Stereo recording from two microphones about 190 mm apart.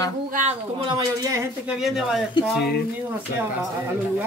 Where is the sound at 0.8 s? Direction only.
15° right (ahead or behind).